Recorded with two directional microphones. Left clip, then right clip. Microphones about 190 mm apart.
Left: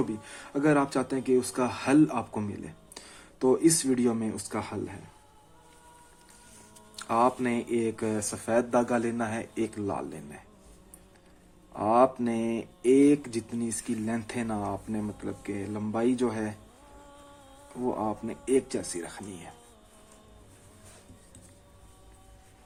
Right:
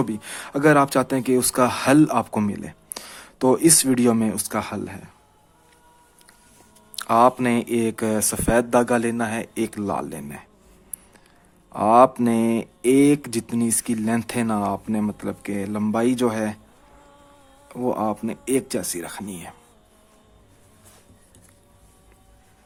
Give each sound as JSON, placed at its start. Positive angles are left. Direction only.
{"t": 0.2, "sound": "speech", "side_deg": -45}
{"t": 6.9, "sound": "speech", "side_deg": -45}
{"t": 11.7, "sound": "speech", "side_deg": -45}
{"t": 17.8, "sound": "speech", "side_deg": -50}